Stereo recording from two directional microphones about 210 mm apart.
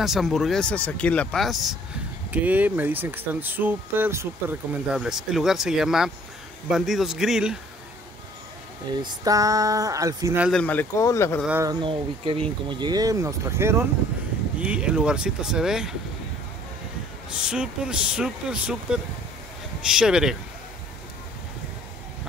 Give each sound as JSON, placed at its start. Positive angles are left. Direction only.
{"t": 0.0, "sound": "speech", "side_deg": 0}
{"t": 9.0, "sound": "speech", "side_deg": -15}
{"t": 10.5, "sound": "speech", "side_deg": 5}
{"t": 11.4, "sound": "speech", "side_deg": -10}
{"t": 17.4, "sound": "speech", "side_deg": -5}